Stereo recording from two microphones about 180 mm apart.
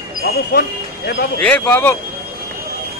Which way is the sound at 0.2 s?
60° left (ahead or behind).